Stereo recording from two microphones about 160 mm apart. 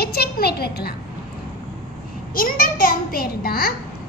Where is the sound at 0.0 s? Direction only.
75° left (ahead or behind).